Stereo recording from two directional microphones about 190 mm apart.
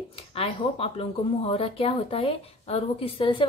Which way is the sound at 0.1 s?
30° left (ahead or behind).